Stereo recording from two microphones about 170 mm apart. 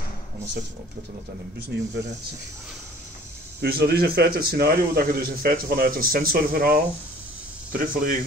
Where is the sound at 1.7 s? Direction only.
90° right.